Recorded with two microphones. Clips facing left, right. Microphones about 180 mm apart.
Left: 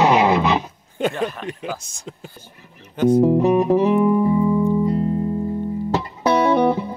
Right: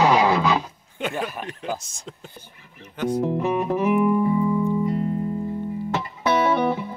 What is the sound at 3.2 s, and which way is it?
Music, 40° left (ahead or behind).